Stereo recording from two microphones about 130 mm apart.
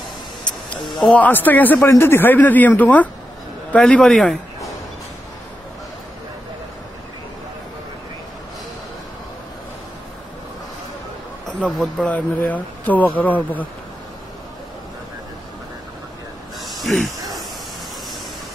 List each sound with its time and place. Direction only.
1.0 s a man's voice: 10° left (ahead or behind)
11.4 s a man's voice: centre (ahead or behind)
12.1 s a man's voice: 10° left (ahead or behind)
16.6 s a sound: centre (ahead or behind)